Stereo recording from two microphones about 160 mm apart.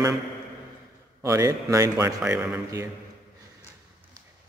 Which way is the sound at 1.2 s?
20° right (ahead or behind).